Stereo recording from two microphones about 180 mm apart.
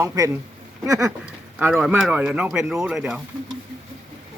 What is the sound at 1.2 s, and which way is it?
Speech, 5° right (ahead or behind).